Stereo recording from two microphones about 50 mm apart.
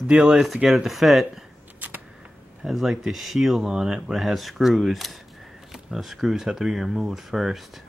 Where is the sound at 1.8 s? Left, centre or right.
Right.